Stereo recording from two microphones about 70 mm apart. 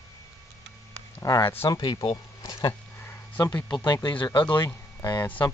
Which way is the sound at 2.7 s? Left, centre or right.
Left.